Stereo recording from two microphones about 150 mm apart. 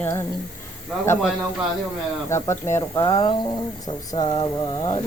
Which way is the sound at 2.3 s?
15° left (ahead or behind).